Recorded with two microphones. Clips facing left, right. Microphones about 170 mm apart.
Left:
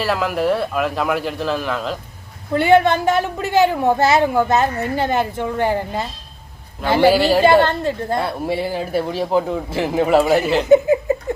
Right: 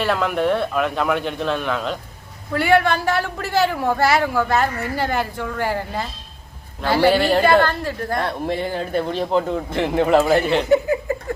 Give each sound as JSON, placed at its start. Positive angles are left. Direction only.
{"t": 0.0, "sound": "a man's voice", "side_deg": 0}
{"t": 2.5, "sound": "speech", "side_deg": 20}
{"t": 7.1, "sound": "a man's voice", "side_deg": 5}
{"t": 7.6, "sound": "speech", "side_deg": 25}
{"t": 8.2, "sound": "a man's voice", "side_deg": 5}
{"t": 10.7, "sound": "a sound", "side_deg": 20}